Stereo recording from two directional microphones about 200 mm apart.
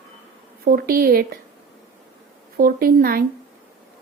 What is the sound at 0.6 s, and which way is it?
Speech, 45° right (ahead or behind).